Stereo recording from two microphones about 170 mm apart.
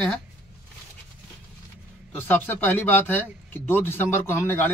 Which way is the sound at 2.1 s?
10° left (ahead or behind).